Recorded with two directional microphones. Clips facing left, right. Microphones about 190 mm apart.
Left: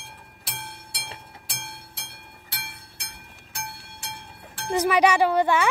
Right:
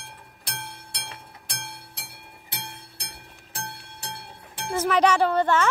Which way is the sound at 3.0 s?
35° right (ahead or behind).